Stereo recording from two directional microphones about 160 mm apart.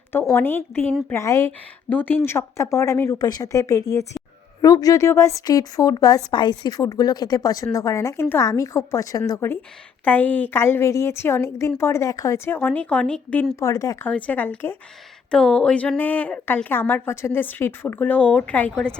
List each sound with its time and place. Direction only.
0.1 s a woman's voice: 15° left (ahead or behind)
13.6 s speech: 20° left (ahead or behind)
14.1 s a woman's voice: 10° left (ahead or behind)